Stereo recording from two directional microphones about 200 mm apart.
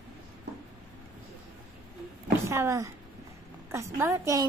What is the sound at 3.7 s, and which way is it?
Speech, 15° right (ahead or behind).